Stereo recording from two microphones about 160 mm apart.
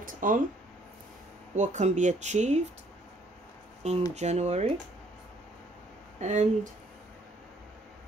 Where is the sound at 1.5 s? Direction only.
50° right (ahead or behind).